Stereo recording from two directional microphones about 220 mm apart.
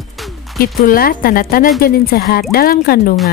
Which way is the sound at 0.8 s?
40° left (ahead or behind).